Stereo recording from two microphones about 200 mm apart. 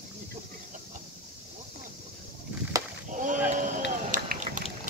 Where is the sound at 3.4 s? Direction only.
40° right (ahead or behind).